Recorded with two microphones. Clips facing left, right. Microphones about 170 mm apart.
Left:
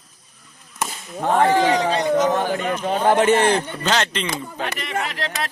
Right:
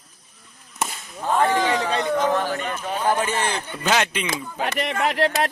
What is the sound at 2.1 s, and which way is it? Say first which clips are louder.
Speech: left 2 dB; 20° left (ahead or behind).